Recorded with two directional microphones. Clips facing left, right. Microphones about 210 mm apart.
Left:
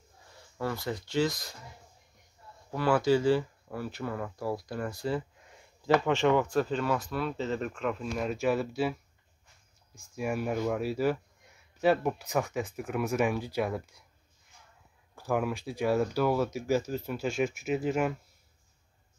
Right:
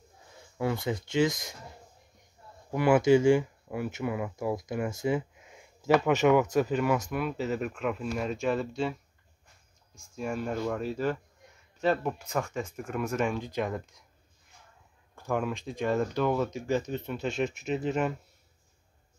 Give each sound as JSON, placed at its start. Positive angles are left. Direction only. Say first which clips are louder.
{"t": 0.6, "sound": "speech", "louder": "right 3 dB", "side_deg": -15}
{"t": 2.7, "sound": "speech", "louder": "right 4 dB", "side_deg": -15}
{"t": 10.1, "sound": "speech", "louder": "left 1 dB", "side_deg": 10}
{"t": 15.1, "sound": "speech", "louder": "left 1 dB", "side_deg": 5}